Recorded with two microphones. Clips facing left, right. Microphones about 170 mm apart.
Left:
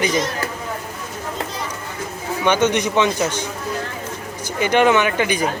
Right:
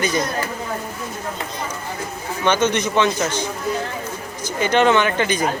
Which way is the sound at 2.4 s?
15° left (ahead or behind).